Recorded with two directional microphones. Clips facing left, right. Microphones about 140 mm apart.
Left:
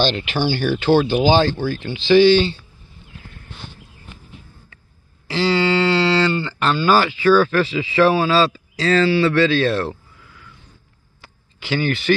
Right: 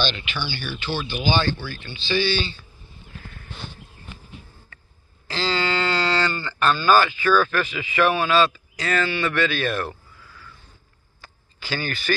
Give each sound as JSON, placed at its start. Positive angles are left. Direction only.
{"t": 0.0, "sound": "speech", "side_deg": 35}
{"t": 0.5, "sound": "speech", "side_deg": 45}
{"t": 1.2, "sound": "speech", "side_deg": 90}
{"t": 5.3, "sound": "speech", "side_deg": 20}
{"t": 11.1, "sound": "a sound", "side_deg": 20}